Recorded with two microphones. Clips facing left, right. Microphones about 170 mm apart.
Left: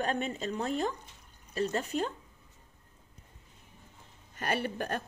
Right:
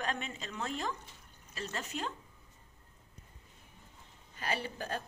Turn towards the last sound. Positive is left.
turn(degrees=60)  # may be behind; listen again after turning